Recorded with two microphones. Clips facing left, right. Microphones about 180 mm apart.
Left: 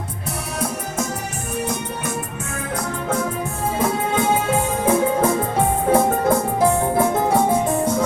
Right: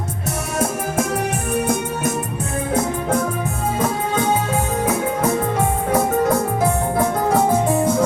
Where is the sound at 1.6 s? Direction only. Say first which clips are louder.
Right 5 dB; 50° right (ahead or behind).